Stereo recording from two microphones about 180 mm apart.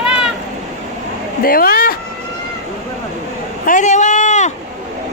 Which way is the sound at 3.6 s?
45° left (ahead or behind).